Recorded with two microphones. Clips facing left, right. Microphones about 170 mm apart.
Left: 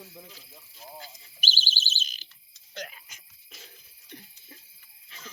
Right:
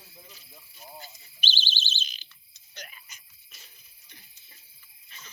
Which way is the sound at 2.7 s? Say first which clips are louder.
Left 8 dB; 90° left.